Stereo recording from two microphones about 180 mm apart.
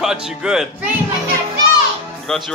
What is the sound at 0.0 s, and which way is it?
Speech, 5° right (ahead or behind).